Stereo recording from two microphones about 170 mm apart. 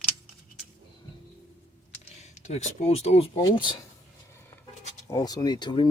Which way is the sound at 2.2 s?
40° left (ahead or behind).